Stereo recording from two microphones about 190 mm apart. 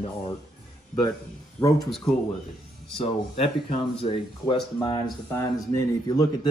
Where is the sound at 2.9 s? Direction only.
30° left (ahead or behind).